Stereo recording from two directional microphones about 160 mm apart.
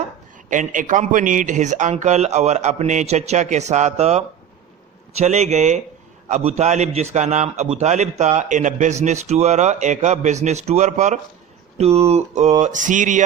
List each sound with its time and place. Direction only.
0.5 s a man's voice: 55° right (ahead or behind)